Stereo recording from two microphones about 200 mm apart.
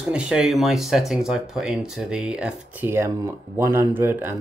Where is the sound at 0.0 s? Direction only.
5° right (ahead or behind).